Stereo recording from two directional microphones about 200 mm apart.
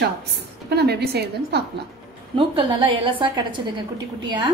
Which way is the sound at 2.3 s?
25° right (ahead or behind).